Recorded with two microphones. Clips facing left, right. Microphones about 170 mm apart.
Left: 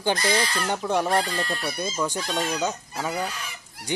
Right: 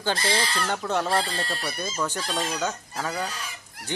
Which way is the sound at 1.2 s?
30° right (ahead or behind).